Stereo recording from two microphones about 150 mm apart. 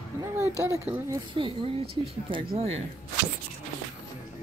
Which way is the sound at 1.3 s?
35° right (ahead or behind).